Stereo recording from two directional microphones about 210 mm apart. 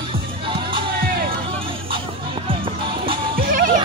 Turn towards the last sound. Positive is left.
turn(degrees=-40)  # may be behind; listen again after turning